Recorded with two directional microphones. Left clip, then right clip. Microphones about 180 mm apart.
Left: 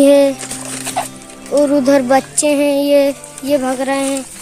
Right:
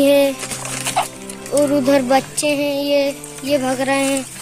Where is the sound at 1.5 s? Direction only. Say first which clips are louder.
Left 3 dB; 25° left (ahead or behind).